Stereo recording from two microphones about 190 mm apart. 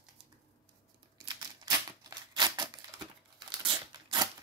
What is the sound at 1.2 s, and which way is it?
Crumpling, 20° right (ahead or behind).